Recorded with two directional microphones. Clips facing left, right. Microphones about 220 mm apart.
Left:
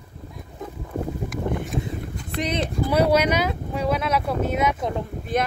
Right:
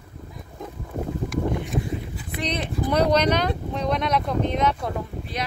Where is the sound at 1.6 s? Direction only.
Centre (ahead or behind).